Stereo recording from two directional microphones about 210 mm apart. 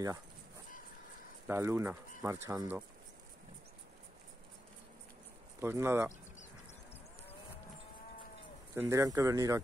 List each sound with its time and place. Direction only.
1.5 s speech: 10° right (ahead or behind)
5.6 s speech: 10° right (ahead or behind)
8.7 s speech: 15° right (ahead or behind)